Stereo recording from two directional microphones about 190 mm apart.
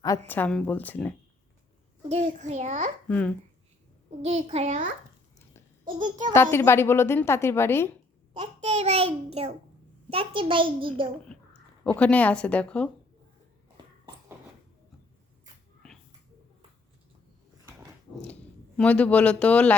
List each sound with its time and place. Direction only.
0.3 s a woman's voice: 10° left (ahead or behind)
2.0 s a child's voice: 35° right (ahead or behind)
3.1 s a woman's voice: 5° left (ahead or behind)
4.2 s a child's voice: 35° right (ahead or behind)
6.3 s a woman's voice: 10° left (ahead or behind)
8.3 s a child's voice: 30° right (ahead or behind)
11.3 s a sound: 5° left (ahead or behind)
11.8 s a woman's voice: 5° left (ahead or behind)
17.7 s dog: 15° right (ahead or behind)
18.2 s speech: 5° left (ahead or behind)